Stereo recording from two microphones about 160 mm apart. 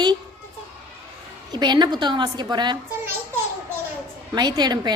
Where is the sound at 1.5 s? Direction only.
30° right (ahead or behind).